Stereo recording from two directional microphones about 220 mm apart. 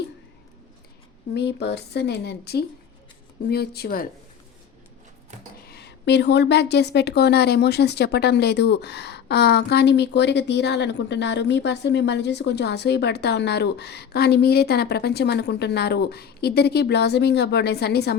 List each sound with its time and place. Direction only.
1.3 s a woman's voice: 50° left (ahead or behind)
5.6 s a woman's voice: 45° left (ahead or behind)